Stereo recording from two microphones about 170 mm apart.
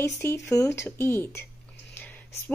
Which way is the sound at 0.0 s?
15° left (ahead or behind).